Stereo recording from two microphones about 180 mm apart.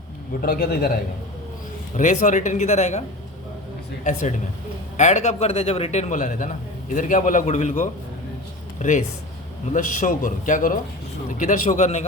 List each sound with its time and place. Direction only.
0.4 s a man's voice: 55° left (ahead or behind)
2.0 s speech: 45° left (ahead or behind)
4.0 s a man's voice: 45° left (ahead or behind)